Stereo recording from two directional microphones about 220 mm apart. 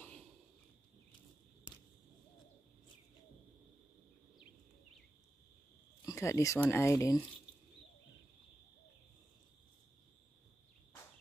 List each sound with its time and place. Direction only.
6.0 s speech: 15° left (ahead or behind)